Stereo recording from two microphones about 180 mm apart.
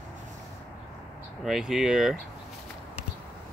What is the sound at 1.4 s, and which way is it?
Speech, centre (ahead or behind).